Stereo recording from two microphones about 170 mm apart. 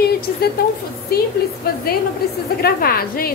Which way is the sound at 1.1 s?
70° left (ahead or behind).